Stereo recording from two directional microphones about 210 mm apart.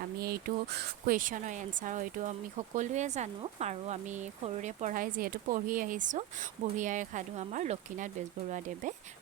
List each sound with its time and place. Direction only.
0.2 s speech: 45° right (ahead or behind)